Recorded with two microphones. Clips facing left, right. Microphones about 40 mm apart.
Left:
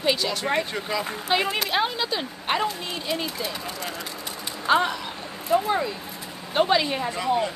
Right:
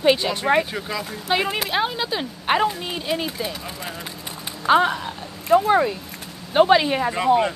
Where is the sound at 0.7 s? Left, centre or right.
Centre.